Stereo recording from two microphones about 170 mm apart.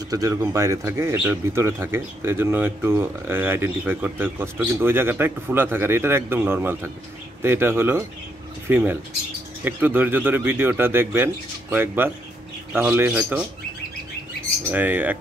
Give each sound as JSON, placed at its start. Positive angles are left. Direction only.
{"t": 0.1, "sound": "speech", "side_deg": -20}
{"t": 14.7, "sound": "speech", "side_deg": -10}